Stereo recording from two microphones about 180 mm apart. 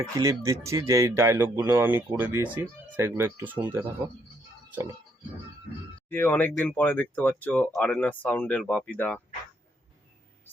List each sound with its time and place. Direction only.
0.0 s speech: 20° right (ahead or behind)
6.1 s speech: 10° left (ahead or behind)